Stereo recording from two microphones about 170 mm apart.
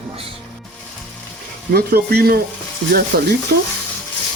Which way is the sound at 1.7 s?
60° right (ahead or behind).